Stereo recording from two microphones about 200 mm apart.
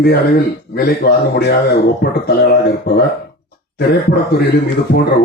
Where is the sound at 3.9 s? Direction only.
55° left (ahead or behind).